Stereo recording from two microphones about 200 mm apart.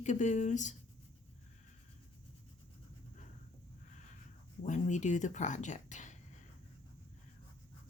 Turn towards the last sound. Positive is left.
turn(degrees=40)  # may be behind; listen again after turning